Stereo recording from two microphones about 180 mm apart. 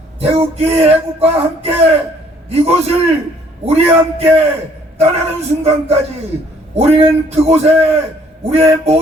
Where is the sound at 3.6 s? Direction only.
35° right (ahead or behind).